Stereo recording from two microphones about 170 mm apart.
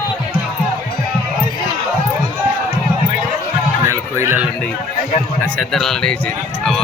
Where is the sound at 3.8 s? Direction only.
15° right (ahead or behind).